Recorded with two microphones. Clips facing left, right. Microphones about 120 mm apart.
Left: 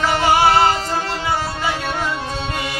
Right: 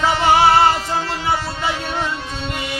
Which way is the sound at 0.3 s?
25° right (ahead or behind).